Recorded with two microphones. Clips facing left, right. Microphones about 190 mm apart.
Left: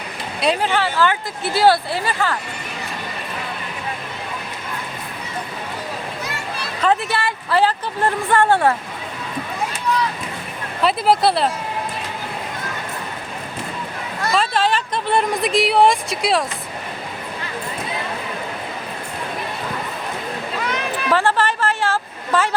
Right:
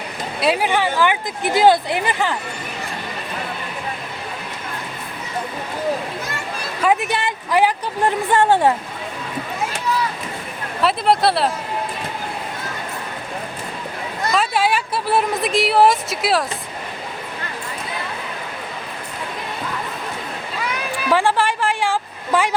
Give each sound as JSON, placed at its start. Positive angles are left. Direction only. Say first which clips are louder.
{"t": 0.3, "sound": "speech", "louder": "right 1 dB", "side_deg": -5}
{"t": 6.8, "sound": "speech", "louder": "even", "side_deg": -15}
{"t": 10.8, "sound": "a woman's voice", "louder": "even", "side_deg": 0}
{"t": 14.3, "sound": "a woman's voice", "louder": "even", "side_deg": -10}
{"t": 20.7, "sound": "a sound", "louder": "right 1 dB", "side_deg": -10}